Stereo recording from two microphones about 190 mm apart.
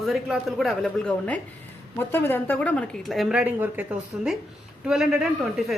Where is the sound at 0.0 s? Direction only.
Centre (ahead or behind).